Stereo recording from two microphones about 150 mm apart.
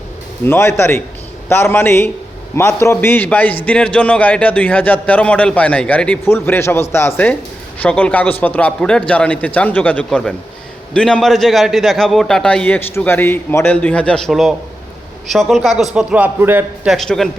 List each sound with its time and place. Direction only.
0.4 s a man's voice: 15° left (ahead or behind); by 16.9 s 15° right (ahead or behind)
16.9 s a man's voice: centre (ahead or behind)